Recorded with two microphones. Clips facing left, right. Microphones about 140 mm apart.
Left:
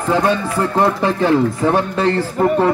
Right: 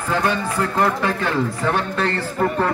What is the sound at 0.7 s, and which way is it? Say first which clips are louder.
Speech: left 5 dB; 25° left (ahead or behind).